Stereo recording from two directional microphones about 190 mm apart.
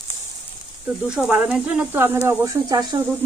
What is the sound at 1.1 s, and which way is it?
Speech, 5° right (ahead or behind).